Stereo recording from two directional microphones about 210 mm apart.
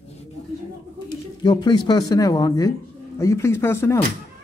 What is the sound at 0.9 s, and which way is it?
Speech, 20° left (ahead or behind).